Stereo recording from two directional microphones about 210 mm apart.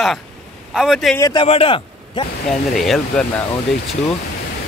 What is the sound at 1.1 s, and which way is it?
A man's voice, 20° left (ahead or behind).